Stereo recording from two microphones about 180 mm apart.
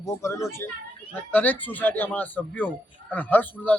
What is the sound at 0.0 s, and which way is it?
A man's voice, 15° left (ahead or behind).